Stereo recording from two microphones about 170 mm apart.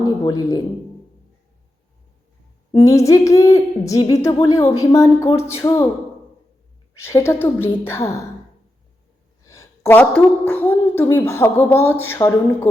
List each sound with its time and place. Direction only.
0.0 s speech: 20° left (ahead or behind)
2.9 s a woman's voice: 20° left (ahead or behind)
6.9 s a woman's voice: 15° left (ahead or behind)
9.5 s a woman's voice: 15° left (ahead or behind)